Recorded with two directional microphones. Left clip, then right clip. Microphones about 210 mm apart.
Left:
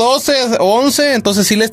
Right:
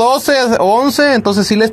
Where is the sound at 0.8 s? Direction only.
15° left (ahead or behind).